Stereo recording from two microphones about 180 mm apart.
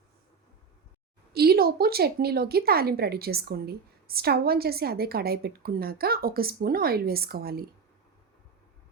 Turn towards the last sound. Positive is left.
turn(degrees=-60)  # may be behind; listen again after turning